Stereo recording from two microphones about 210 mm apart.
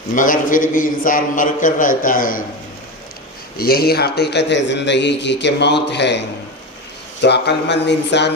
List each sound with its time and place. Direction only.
0.1 s a man's voice: 40° left (ahead or behind)
3.6 s a man's voice: 45° left (ahead or behind)